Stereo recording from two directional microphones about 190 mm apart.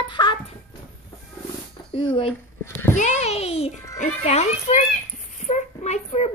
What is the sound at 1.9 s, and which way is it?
A child's voice, 25° left (ahead or behind).